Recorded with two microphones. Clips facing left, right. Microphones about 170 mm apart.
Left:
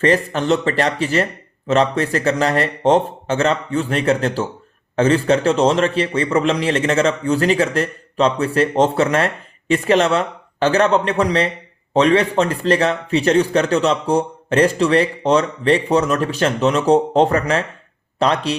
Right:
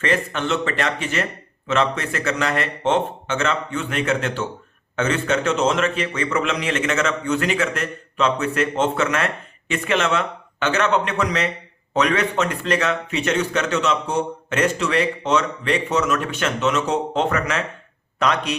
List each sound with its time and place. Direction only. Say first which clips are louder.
0.0 s a man's voice: left 6 dB; 35° left (ahead or behind)